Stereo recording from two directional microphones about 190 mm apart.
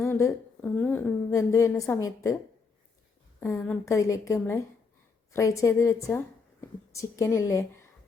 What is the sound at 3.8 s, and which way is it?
A woman's voice, 15° left (ahead or behind).